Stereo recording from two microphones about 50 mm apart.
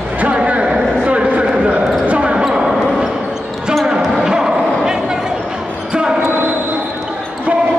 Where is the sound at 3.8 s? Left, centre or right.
Centre.